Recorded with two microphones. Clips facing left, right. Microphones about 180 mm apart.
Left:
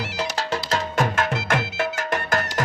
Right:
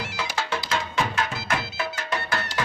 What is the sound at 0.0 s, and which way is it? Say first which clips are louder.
Music: left 3 dB; 40° left (ahead or behind).